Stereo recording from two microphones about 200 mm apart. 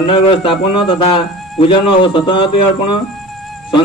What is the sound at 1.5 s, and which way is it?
Speech, 25° left (ahead or behind).